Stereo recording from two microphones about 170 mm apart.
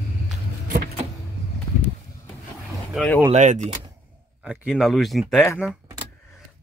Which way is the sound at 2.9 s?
5° left (ahead or behind).